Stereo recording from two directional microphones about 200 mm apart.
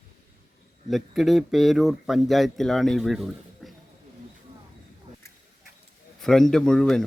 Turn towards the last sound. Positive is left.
turn(degrees=0)  # may be behind; listen again after turning